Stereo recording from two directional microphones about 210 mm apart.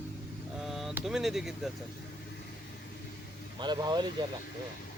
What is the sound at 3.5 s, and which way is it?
Speech, 20° right (ahead or behind).